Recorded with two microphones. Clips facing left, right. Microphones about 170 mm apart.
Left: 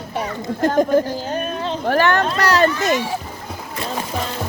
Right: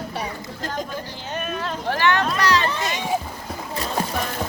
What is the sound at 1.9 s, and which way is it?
Speech, 45° left (ahead or behind).